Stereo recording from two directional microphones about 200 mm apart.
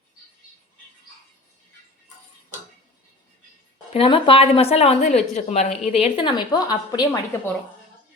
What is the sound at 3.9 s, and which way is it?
A woman's voice, 25° left (ahead or behind).